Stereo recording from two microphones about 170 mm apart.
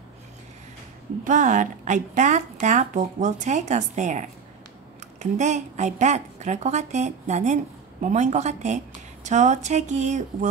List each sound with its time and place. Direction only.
1.2 s a woman's voice: 50° right (ahead or behind)